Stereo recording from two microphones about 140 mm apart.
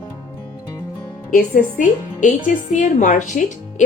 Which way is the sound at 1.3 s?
75° left (ahead or behind).